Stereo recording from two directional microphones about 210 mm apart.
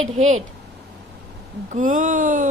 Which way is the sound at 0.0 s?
35° right (ahead or behind).